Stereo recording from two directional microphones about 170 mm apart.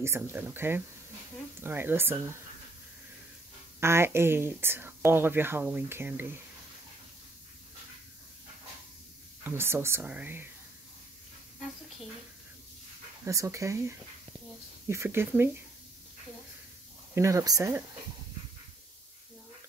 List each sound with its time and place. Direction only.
0.0 s speech: 15° right (ahead or behind)
3.8 s speech: 15° right (ahead or behind)
9.4 s speech: 15° right (ahead or behind)
13.2 s speech: 15° right (ahead or behind)
17.1 s speech: 15° right (ahead or behind)